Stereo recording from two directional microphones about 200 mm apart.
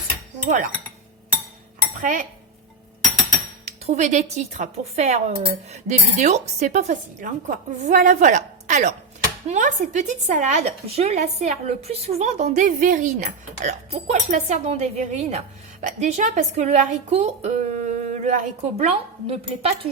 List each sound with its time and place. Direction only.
0.4 s a woman's voice: 40° right (ahead or behind)
2.0 s a woman's voice: 40° right (ahead or behind)
3.7 s a woman's voice: 35° right (ahead or behind)